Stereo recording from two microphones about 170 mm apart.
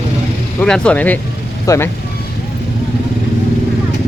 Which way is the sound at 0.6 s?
5° left (ahead or behind).